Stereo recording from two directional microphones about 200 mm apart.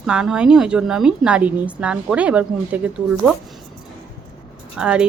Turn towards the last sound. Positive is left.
turn(degrees=-5)  # may be behind; listen again after turning